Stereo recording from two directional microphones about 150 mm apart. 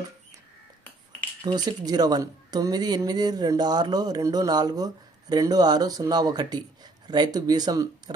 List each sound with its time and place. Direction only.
1.4 s a woman's voice: 30° right (ahead or behind)